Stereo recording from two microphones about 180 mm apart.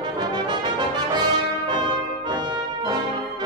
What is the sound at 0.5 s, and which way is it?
Brass instrument, 25° right (ahead or behind).